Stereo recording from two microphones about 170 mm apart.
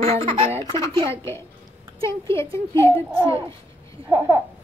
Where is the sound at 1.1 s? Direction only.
15° left (ahead or behind).